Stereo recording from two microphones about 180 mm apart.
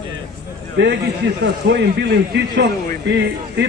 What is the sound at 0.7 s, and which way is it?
A man's voice, 75° right (ahead or behind).